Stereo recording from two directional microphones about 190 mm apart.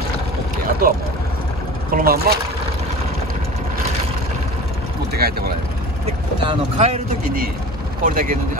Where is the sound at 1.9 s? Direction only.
55° right (ahead or behind).